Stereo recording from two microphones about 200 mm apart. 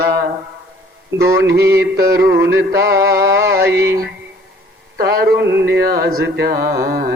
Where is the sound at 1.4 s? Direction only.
55° right (ahead or behind).